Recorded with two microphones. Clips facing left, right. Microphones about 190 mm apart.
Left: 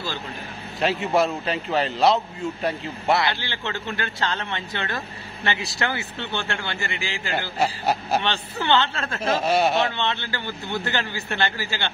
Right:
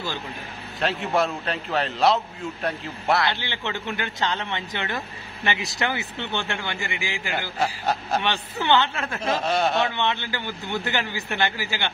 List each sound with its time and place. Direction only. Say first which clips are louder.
0.7 s a man's voice: left 2 dB; 5° left (ahead or behind)
3.3 s speech: even; 15° right (ahead or behind)
7.6 s speech: left 2 dB; 10° left (ahead or behind)
8.2 s speech: even; 15° right (ahead or behind)
9.2 s a man's voice: left 3 dB; 5° left (ahead or behind)
9.9 s speech: right 1 dB; 15° right (ahead or behind)